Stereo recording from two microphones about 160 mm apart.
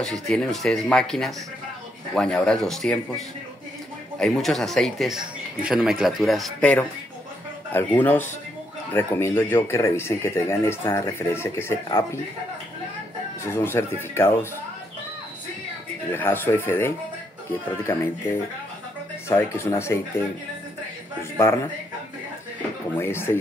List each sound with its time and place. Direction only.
0.0 s speech: 5° left (ahead or behind)
13.4 s speech: 15° left (ahead or behind)
16.1 s speech: 15° left (ahead or behind)
19.2 s speech: 15° left (ahead or behind)
21.4 s speech: 15° left (ahead or behind)
22.9 s speech: 15° left (ahead or behind)